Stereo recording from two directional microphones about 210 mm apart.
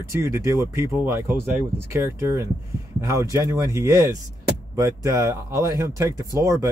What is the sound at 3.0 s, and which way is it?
A man's voice, 15° right (ahead or behind).